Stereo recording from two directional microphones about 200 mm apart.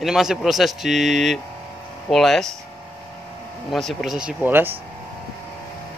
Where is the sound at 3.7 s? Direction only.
Centre (ahead or behind).